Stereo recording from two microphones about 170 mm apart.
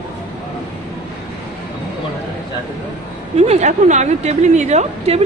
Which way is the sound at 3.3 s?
40° right (ahead or behind).